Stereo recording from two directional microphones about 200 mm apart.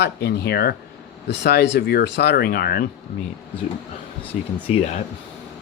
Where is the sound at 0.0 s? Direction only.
55° left (ahead or behind).